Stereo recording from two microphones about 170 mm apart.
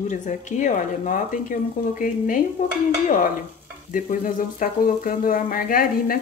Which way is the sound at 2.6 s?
45° left (ahead or behind).